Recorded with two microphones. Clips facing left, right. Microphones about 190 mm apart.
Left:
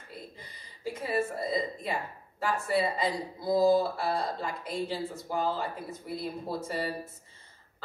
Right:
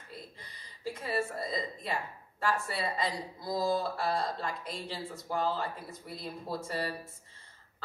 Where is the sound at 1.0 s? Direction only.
10° left (ahead or behind).